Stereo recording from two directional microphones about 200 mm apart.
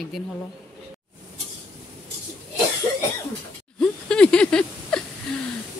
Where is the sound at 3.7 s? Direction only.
5° left (ahead or behind).